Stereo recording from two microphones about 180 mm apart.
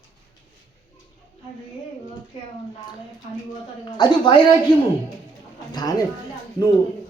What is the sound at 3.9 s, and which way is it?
Speech, 25° left (ahead or behind).